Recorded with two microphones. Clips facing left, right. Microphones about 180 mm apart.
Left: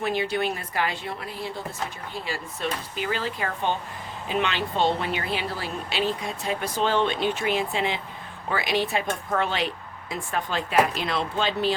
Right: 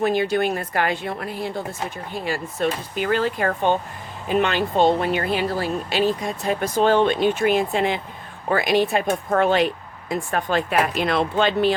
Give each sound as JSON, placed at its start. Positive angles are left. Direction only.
{"t": 0.0, "sound": "speech", "side_deg": -45}